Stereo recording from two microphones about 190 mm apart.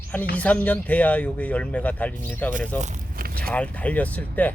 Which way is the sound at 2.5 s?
40° right (ahead or behind).